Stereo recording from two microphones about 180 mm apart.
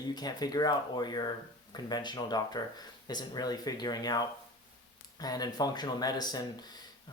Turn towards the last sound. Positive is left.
turn(degrees=20)  # may be behind; listen again after turning